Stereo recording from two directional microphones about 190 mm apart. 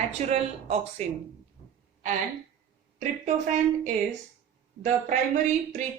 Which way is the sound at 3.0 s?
40° right (ahead or behind).